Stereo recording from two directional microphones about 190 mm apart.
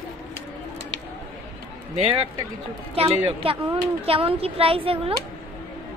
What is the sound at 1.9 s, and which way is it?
A woman's voice, 30° right (ahead or behind).